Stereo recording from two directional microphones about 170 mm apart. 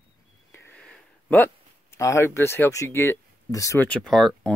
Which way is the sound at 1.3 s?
15° left (ahead or behind).